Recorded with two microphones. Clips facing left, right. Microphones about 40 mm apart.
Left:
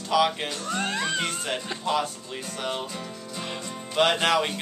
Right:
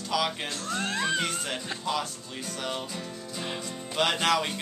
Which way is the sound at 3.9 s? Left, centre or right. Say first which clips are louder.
Left 3 dB; centre.